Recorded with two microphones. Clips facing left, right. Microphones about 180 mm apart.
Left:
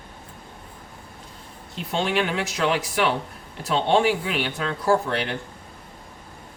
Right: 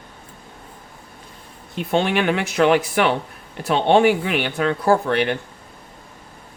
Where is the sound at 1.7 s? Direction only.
60° right (ahead or behind).